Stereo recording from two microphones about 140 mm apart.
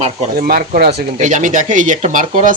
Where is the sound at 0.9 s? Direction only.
60° right (ahead or behind).